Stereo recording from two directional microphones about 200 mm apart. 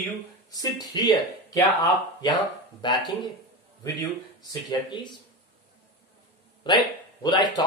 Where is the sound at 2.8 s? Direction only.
20° left (ahead or behind).